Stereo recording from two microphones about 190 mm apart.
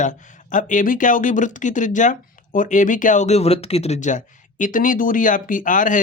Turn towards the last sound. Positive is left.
turn(degrees=45)  # may be behind; listen again after turning